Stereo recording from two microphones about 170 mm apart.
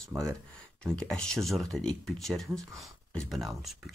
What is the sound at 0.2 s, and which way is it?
Speech, 5° left (ahead or behind).